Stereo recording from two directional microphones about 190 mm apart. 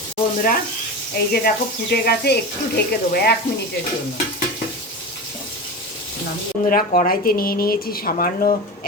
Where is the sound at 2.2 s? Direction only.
55° left (ahead or behind).